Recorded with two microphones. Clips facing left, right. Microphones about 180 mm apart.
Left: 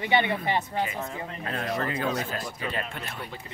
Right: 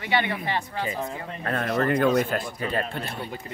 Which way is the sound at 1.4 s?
60° right (ahead or behind).